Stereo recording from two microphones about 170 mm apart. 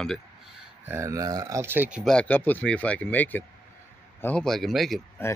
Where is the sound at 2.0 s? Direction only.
5° left (ahead or behind).